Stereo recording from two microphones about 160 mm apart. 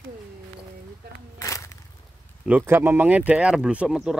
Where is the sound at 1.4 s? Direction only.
20° left (ahead or behind).